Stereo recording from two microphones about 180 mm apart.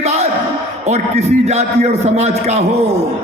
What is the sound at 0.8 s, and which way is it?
A man's voice, 40° right (ahead or behind).